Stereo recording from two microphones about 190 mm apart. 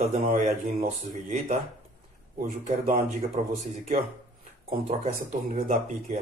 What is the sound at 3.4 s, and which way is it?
Speech, 40° right (ahead or behind).